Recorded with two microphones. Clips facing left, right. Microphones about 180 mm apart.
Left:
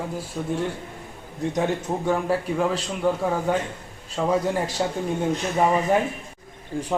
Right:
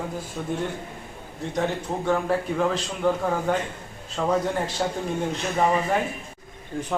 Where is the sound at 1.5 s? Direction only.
15° left (ahead or behind).